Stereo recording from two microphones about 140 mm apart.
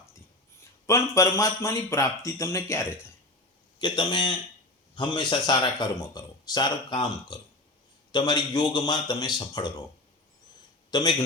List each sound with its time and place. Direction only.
0.9 s speech: 20° left (ahead or behind)
3.8 s speech: 35° left (ahead or behind)
10.9 s speech: 30° left (ahead or behind)